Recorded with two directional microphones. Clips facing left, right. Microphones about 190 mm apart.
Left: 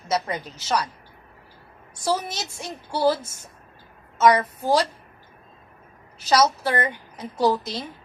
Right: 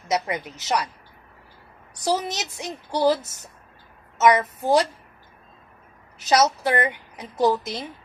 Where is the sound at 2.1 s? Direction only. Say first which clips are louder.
Right 1 dB; 20° right (ahead or behind).